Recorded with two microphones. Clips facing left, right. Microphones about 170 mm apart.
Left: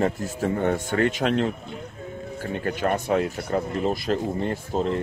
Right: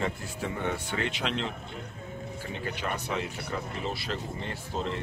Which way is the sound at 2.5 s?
50° left (ahead or behind).